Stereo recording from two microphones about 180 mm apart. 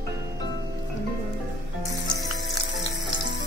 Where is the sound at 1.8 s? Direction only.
20° right (ahead or behind).